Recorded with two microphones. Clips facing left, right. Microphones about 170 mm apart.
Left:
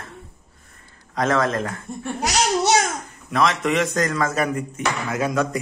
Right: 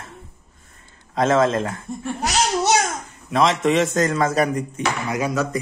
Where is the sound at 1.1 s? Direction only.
25° right (ahead or behind).